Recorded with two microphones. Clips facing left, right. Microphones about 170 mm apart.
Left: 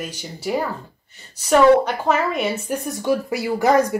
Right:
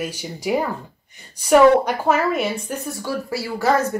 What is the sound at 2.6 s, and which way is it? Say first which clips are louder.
Speech: left 5 dB; 20° left (ahead or behind).